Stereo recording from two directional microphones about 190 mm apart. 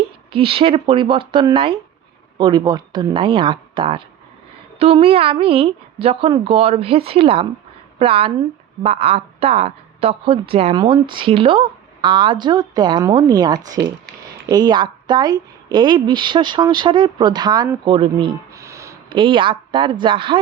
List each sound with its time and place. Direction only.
0.3 s a woman's voice: 30° right (ahead or behind)
19.1 s speech: 25° right (ahead or behind)